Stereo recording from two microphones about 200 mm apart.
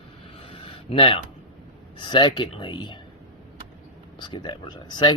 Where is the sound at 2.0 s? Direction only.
25° left (ahead or behind).